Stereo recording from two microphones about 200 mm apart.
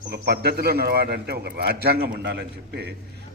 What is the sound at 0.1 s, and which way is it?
A man's voice, 50° right (ahead or behind).